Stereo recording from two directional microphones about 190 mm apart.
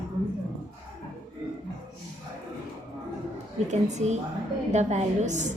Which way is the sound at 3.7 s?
35° right (ahead or behind).